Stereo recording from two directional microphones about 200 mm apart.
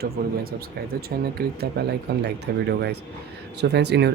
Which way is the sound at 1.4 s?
50° right (ahead or behind).